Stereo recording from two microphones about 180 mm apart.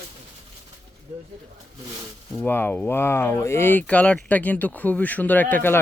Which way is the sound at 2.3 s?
10° left (ahead or behind).